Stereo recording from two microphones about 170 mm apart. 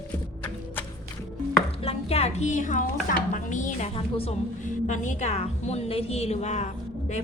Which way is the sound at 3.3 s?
45° left (ahead or behind).